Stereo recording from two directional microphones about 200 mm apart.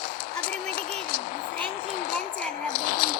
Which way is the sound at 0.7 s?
40° left (ahead or behind).